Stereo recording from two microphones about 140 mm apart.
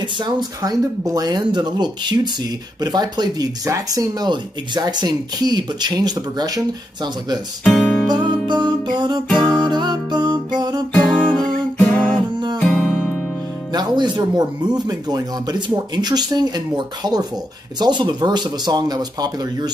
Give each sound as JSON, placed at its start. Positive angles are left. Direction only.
{"t": 0.2, "sound": "speech", "side_deg": -30}
{"t": 7.6, "sound": "music", "side_deg": 10}
{"t": 8.1, "sound": "music", "side_deg": -30}
{"t": 10.9, "sound": "music", "side_deg": 10}
{"t": 13.7, "sound": "speech", "side_deg": -30}